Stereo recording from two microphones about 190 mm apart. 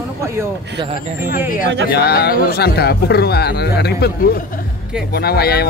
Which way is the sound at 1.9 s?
55° left (ahead or behind).